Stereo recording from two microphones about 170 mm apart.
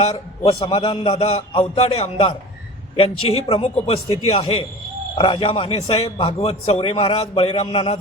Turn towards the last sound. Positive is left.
turn(degrees=35)  # may be behind; listen again after turning